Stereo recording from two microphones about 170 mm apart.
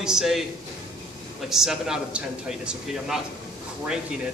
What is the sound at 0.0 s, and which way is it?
Speech, 5° right (ahead or behind).